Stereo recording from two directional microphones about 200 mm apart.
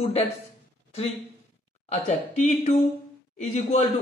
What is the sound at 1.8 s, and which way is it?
Speech, 35° left (ahead or behind).